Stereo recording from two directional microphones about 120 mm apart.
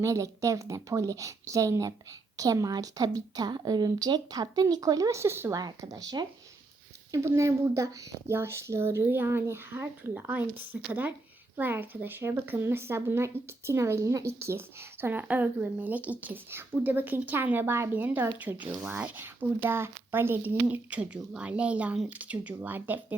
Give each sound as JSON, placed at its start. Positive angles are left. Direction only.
{"t": 0.0, "sound": "speech", "side_deg": -25}